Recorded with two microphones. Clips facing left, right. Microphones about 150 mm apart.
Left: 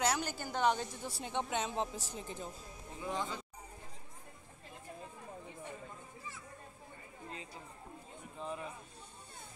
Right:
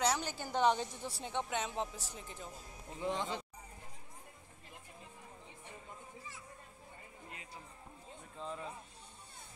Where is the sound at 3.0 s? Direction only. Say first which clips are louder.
Right 2 dB; 25° right (ahead or behind).